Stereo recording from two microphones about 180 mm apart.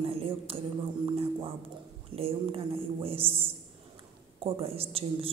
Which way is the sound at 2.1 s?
30° right (ahead or behind).